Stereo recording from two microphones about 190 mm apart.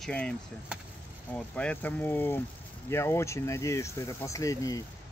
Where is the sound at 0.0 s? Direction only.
5° left (ahead or behind).